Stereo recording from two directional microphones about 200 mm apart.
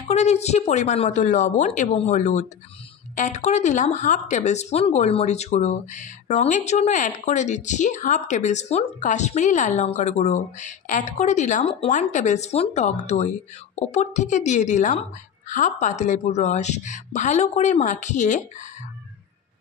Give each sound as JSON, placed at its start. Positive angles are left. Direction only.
{"t": 0.1, "sound": "speech", "side_deg": 35}